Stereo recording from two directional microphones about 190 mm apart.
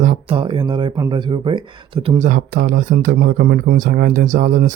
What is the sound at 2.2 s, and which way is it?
Speech, 45° right (ahead or behind).